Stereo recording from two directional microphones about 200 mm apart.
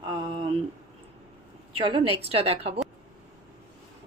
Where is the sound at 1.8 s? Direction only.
25° right (ahead or behind).